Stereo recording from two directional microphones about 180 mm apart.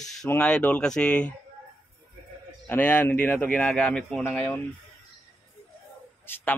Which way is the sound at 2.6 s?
10° left (ahead or behind).